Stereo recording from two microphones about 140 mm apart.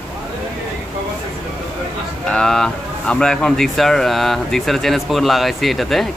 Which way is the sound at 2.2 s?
5° left (ahead or behind).